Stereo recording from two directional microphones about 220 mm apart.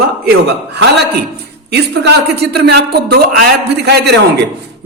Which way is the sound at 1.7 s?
50° right (ahead or behind).